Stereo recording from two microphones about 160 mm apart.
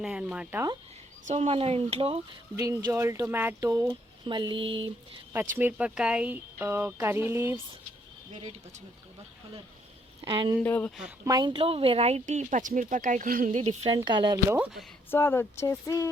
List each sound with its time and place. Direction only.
0.0 s speech: 5° right (ahead or behind)
1.3 s speech: 40° right (ahead or behind)
2.6 s speech: 20° right (ahead or behind)
5.3 s speech: 15° right (ahead or behind)
10.2 s speech: 30° right (ahead or behind)
10.6 s speech: 10° left (ahead or behind)
11.3 s speech: 25° right (ahead or behind); by 13.7 s 50° right (ahead or behind)
13.8 s speech: 30° right (ahead or behind)
14.5 s speech: 5° right (ahead or behind)
15.1 s speech: 15° left (ahead or behind)